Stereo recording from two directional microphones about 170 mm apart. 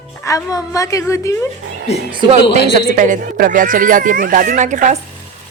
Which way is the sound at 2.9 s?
50° right (ahead or behind).